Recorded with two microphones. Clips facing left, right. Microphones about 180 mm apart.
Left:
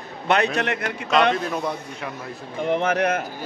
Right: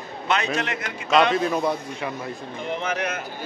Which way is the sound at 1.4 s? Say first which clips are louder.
Right 3 dB; centre (ahead or behind).